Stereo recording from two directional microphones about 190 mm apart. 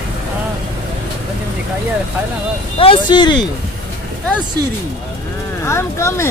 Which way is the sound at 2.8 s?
25° left (ahead or behind).